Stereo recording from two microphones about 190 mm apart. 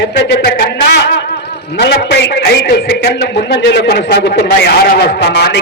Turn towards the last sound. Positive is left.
turn(degrees=60)  # may be behind; listen again after turning